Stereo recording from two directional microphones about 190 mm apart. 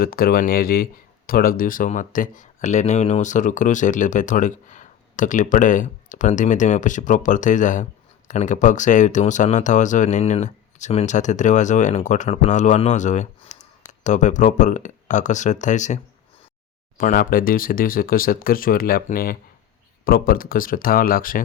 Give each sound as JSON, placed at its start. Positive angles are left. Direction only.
{"t": 0.0, "sound": "speech", "side_deg": 50}
{"t": 17.0, "sound": "speech", "side_deg": 50}